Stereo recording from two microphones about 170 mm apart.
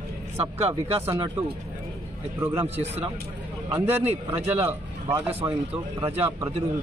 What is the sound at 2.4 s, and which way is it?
Speech, 15° right (ahead or behind).